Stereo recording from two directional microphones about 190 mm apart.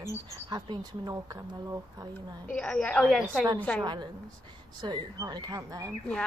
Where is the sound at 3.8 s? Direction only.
25° right (ahead or behind).